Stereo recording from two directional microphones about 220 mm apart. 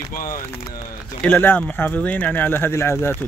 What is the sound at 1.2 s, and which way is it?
Speech, 10° left (ahead or behind).